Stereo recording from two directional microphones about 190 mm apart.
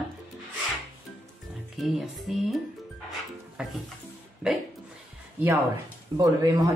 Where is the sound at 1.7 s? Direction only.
Centre (ahead or behind).